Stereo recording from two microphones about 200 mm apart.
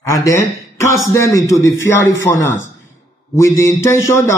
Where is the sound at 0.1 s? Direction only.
15° left (ahead or behind).